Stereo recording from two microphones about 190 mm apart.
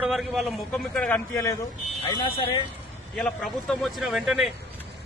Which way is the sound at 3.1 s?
Centre (ahead or behind).